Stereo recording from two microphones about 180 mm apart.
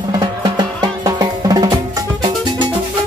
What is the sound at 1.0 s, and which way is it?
Music, 25° right (ahead or behind).